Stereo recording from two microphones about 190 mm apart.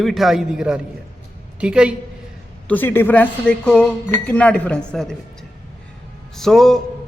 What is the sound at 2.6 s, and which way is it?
Speech, 10° left (ahead or behind).